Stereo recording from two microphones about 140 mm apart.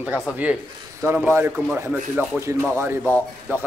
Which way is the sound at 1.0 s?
15° right (ahead or behind).